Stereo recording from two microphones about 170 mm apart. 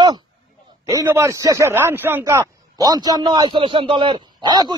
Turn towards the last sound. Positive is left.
turn(degrees=-25)  # may be behind; listen again after turning